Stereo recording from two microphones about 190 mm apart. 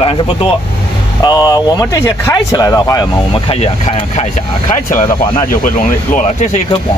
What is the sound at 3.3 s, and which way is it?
Speech, 30° left (ahead or behind).